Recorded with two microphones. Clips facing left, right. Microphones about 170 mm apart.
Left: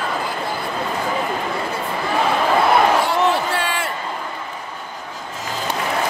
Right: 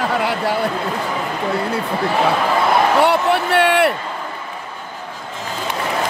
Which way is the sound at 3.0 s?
65° right (ahead or behind).